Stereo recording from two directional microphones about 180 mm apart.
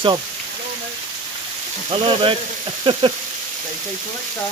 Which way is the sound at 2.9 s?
30° right (ahead or behind).